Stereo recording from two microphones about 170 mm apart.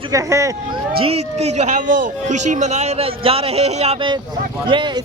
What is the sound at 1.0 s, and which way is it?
Speech, 35° right (ahead or behind).